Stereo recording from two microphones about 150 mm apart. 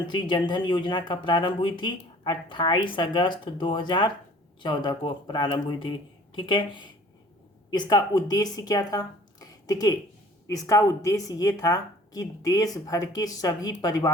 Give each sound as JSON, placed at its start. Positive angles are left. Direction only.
{"t": 0.0, "sound": "speech", "side_deg": 30}